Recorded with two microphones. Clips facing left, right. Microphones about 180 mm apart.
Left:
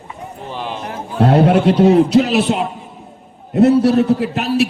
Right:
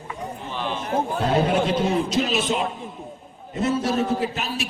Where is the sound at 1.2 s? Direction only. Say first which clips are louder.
Left 11 dB; 65° left (ahead or behind).